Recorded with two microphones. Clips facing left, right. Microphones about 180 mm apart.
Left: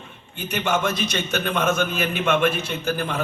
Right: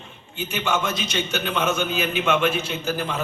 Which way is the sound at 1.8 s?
55° left (ahead or behind).